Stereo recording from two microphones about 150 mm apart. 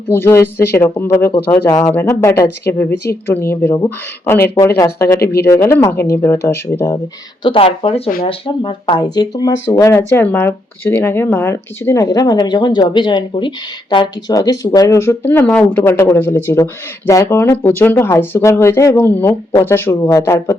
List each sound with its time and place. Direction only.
0.1 s speech: 15° left (ahead or behind)
7.4 s speech: 35° left (ahead or behind); by 20.6 s 20° left (ahead or behind)